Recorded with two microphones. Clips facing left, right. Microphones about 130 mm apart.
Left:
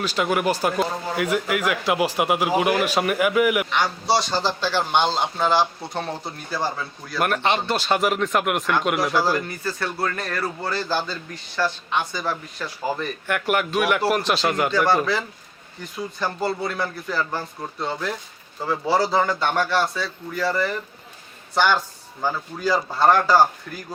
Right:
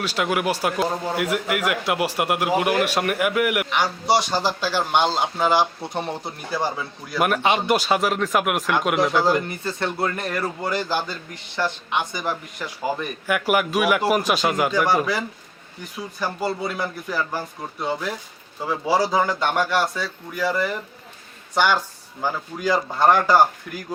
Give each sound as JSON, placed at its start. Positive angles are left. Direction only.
{"t": 0.0, "sound": "a man's voice", "side_deg": 0}
{"t": 4.0, "sound": "speech", "side_deg": -15}
{"t": 7.9, "sound": "a man's voice", "side_deg": 0}
{"t": 9.3, "sound": "speech", "side_deg": -20}